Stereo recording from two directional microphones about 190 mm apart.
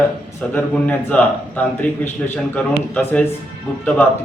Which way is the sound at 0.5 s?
5° left (ahead or behind).